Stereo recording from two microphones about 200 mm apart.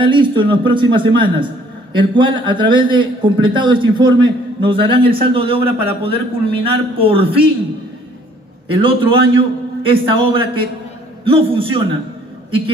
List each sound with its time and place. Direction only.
0.0 s a man's voice: 25° right (ahead or behind)
8.6 s a man's voice: 25° right (ahead or behind)